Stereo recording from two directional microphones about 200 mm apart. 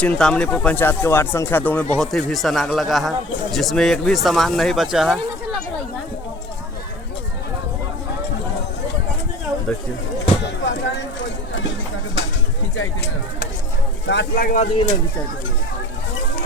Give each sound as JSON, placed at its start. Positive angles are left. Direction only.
{"t": 0.0, "sound": "speech", "side_deg": 5}
{"t": 10.4, "sound": "a sound", "side_deg": 60}
{"t": 14.1, "sound": "speech", "side_deg": 60}
{"t": 14.4, "sound": "speech", "side_deg": 40}